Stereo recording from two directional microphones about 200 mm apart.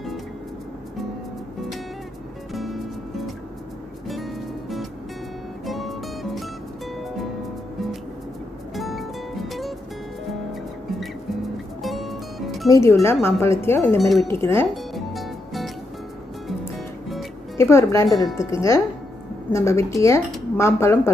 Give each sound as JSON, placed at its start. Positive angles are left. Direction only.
{"t": 2.5, "sound": "music", "side_deg": 0}
{"t": 4.1, "sound": "music", "side_deg": 0}
{"t": 8.7, "sound": "music", "side_deg": 0}
{"t": 11.8, "sound": "music", "side_deg": 0}
{"t": 12.6, "sound": "speech", "side_deg": 15}
{"t": 13.9, "sound": "speech", "side_deg": 0}
{"t": 14.2, "sound": "speech", "side_deg": 15}
{"t": 15.0, "sound": "music", "side_deg": 0}
{"t": 16.7, "sound": "music", "side_deg": 0}
{"t": 17.6, "sound": "speech", "side_deg": 15}